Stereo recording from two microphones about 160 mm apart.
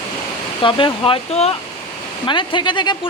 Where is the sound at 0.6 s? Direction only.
35° left (ahead or behind).